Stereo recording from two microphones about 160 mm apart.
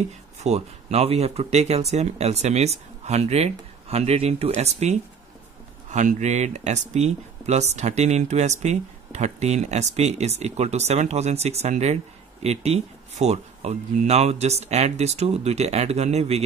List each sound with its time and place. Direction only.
0.4 s speech: 40° right (ahead or behind)